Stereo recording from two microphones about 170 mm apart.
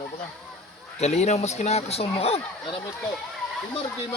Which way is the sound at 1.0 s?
40° left (ahead or behind).